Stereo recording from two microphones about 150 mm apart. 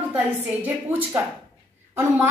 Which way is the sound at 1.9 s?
15° right (ahead or behind).